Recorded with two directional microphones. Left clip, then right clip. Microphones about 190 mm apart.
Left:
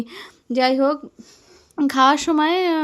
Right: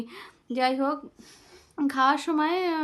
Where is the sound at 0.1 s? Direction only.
30° left (ahead or behind).